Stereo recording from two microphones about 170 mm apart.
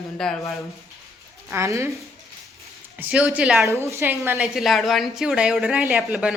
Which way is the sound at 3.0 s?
5° right (ahead or behind).